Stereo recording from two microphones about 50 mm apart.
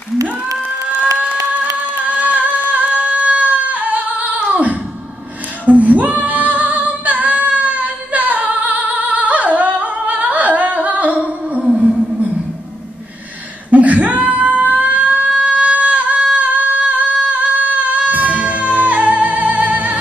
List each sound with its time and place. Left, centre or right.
1.1 s singing: right
5.7 s female singing: right
13.7 s a sound: right